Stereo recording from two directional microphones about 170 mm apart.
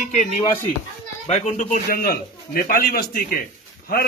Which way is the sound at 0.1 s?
45° left (ahead or behind).